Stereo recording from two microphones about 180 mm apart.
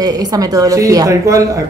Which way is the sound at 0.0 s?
20° right (ahead or behind).